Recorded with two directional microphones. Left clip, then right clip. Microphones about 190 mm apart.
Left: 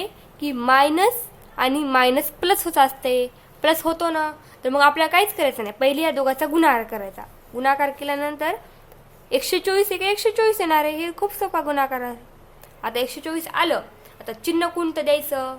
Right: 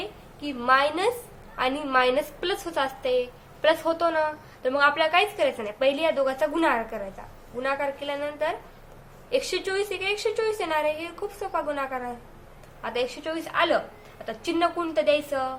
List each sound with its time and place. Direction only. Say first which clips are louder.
0.4 s a woman's voice: left 5 dB; 55° left (ahead or behind)